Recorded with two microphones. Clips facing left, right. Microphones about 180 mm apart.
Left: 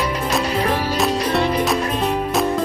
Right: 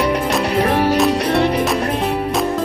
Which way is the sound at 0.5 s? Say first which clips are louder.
Right 5 dB; 65° right (ahead or behind).